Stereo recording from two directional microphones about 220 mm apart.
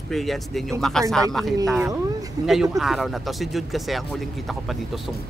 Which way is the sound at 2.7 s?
Centre (ahead or behind).